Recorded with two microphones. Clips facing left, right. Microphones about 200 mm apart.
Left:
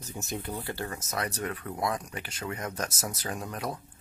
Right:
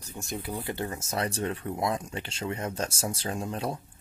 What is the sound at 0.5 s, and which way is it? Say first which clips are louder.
Speech: right 2 dB; 20° right (ahead or behind).